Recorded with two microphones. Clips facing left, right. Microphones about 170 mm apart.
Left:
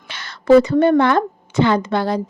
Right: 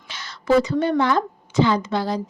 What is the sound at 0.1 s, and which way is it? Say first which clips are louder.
A woman's voice: left 7 dB; 60° left (ahead or behind).